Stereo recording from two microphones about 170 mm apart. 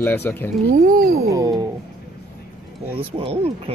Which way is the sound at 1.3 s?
20° right (ahead or behind).